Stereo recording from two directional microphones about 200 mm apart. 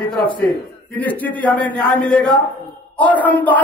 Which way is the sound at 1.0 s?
10° left (ahead or behind).